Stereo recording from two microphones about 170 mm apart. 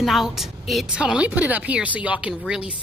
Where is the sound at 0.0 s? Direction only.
Centre (ahead or behind).